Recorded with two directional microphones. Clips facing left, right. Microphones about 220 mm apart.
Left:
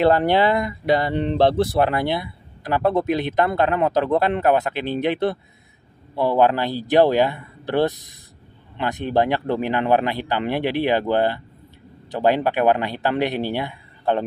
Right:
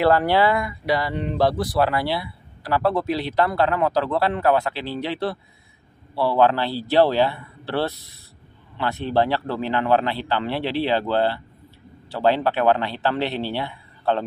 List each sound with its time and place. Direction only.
0.0 s speech: 20° left (ahead or behind)